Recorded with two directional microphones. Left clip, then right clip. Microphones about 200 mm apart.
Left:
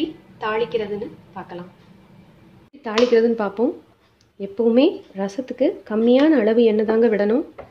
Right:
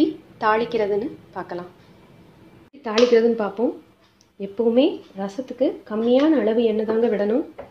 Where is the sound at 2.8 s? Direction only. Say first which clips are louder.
Even; 5° left (ahead or behind).